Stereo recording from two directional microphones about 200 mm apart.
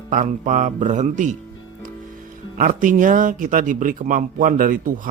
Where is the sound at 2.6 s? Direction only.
40° right (ahead or behind).